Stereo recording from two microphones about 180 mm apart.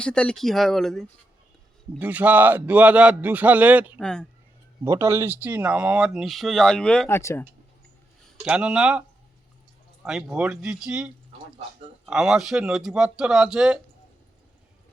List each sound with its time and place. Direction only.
0.0 s speech: 5° left (ahead or behind)
2.0 s speech: 10° right (ahead or behind)
4.0 s speech: 5° left (ahead or behind)
4.8 s speech: 15° right (ahead or behind); by 7.2 s 5° left (ahead or behind)
7.2 s speech: 15° left (ahead or behind)
8.4 s speech: 5° right (ahead or behind)